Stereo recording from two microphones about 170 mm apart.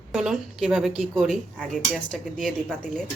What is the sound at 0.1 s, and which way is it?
Speech, centre (ahead or behind).